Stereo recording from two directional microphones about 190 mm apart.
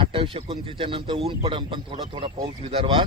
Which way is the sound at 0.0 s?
30° right (ahead or behind).